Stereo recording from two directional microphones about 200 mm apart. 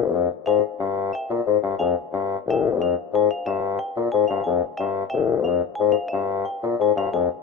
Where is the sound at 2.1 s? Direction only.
15° right (ahead or behind).